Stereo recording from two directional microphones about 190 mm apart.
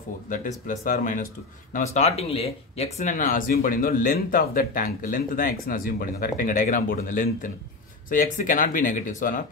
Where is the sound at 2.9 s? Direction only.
40° left (ahead or behind).